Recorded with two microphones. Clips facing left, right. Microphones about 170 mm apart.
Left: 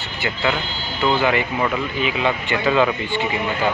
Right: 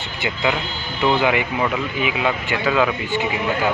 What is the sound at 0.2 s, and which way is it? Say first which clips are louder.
Speech: even; 15° right (ahead or behind).